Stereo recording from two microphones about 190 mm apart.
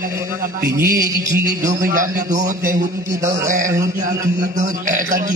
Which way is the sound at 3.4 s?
45° right (ahead or behind).